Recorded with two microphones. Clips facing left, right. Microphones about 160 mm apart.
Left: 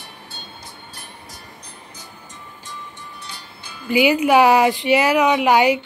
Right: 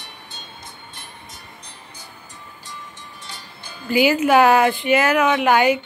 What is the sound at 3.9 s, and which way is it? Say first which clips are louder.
Speech: left 1 dB; 20° left (ahead or behind).